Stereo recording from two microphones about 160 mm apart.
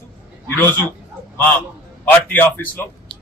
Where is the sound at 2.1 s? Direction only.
10° left (ahead or behind).